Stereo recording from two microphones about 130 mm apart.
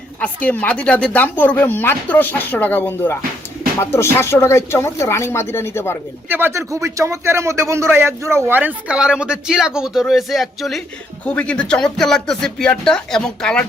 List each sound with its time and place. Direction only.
0.2 s speech: 10° left (ahead or behind)
6.2 s speech: 15° right (ahead or behind); by 13.7 s 5° left (ahead or behind)